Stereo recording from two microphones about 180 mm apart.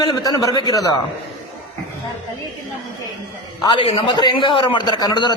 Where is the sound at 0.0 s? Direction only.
20° left (ahead or behind).